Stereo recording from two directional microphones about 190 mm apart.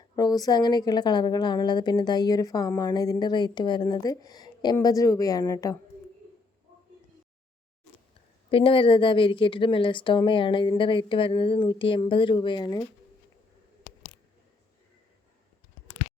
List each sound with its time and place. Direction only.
0.2 s a woman's voice: 20° left (ahead or behind)
8.4 s a woman's voice: 30° left (ahead or behind)